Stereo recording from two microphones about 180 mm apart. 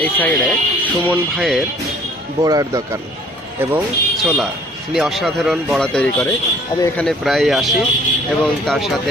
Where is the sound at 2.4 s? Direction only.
20° right (ahead or behind).